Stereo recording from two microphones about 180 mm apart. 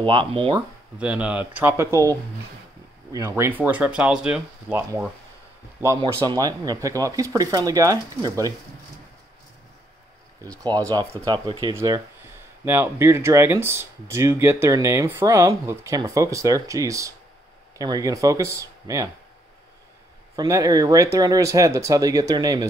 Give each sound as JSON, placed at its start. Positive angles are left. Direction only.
{"t": 0.0, "sound": "speech", "side_deg": -25}
{"t": 0.6, "sound": "speech", "side_deg": -5}
{"t": 10.4, "sound": "speech", "side_deg": -20}
{"t": 20.3, "sound": "speech", "side_deg": -20}